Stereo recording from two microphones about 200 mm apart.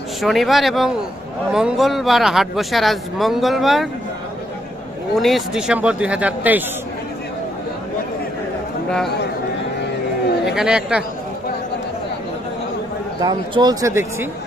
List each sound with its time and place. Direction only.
0.2 s speech: centre (ahead or behind)
5.2 s speech: centre (ahead or behind)
10.4 s speech: centre (ahead or behind)
13.2 s speech: 20° right (ahead or behind)